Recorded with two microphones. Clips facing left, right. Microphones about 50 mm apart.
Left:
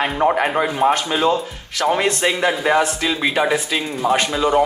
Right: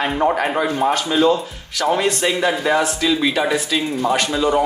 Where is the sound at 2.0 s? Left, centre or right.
Left.